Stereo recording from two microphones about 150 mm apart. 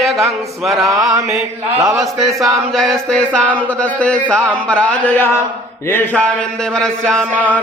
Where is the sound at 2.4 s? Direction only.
Centre (ahead or behind).